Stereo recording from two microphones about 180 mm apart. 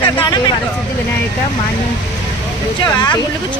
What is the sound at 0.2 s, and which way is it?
Vehicle, 25° left (ahead or behind).